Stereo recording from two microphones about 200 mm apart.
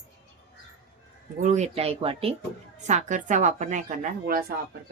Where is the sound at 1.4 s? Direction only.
35° right (ahead or behind).